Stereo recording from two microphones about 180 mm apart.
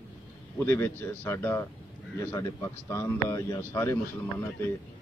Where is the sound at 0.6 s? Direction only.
10° left (ahead or behind).